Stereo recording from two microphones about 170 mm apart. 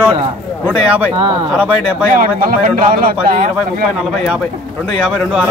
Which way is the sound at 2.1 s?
55° right (ahead or behind).